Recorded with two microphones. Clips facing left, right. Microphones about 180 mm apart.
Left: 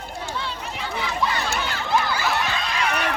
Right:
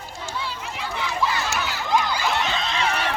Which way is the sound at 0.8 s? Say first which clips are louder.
Even; centre (ahead or behind).